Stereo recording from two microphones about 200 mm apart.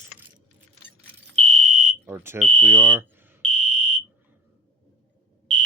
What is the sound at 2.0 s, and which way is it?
Speech, 10° right (ahead or behind).